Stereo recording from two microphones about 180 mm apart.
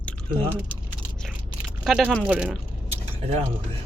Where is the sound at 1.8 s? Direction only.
Centre (ahead or behind).